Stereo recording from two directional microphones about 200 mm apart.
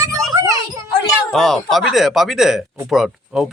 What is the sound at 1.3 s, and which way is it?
A child's voice, centre (ahead or behind).